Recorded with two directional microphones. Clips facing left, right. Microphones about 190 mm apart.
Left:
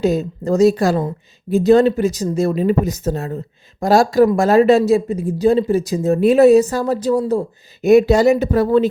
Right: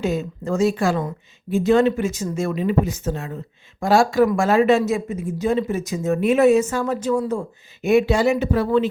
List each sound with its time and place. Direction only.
0.0 s speech: 35° left (ahead or behind)